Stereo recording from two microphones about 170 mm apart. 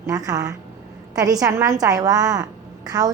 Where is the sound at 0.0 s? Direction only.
20° right (ahead or behind).